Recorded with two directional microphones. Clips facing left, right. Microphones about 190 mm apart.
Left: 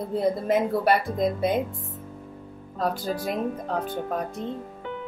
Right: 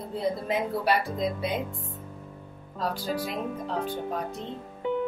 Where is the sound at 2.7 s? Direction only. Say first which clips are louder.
Left 3 dB; 50° left (ahead or behind).